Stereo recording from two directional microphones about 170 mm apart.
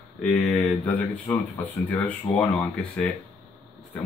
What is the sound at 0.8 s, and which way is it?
Speech, 15° left (ahead or behind).